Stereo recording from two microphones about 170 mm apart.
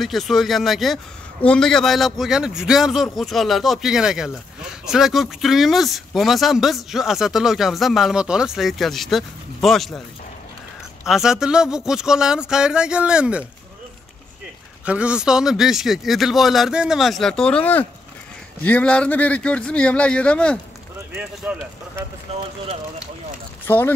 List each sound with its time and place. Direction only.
0.0 s a man's voice: centre (ahead or behind)
11.1 s a man's voice: 5° right (ahead or behind)
14.9 s a man's voice: 5° right (ahead or behind)
21.2 s speech: 10° right (ahead or behind)
23.7 s speech: 10° left (ahead or behind)